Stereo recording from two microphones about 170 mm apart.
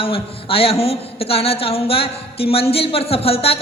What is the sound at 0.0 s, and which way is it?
A man's voice, 35° left (ahead or behind).